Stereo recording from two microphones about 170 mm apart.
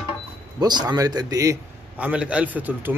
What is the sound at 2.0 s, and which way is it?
Speech, 10° right (ahead or behind).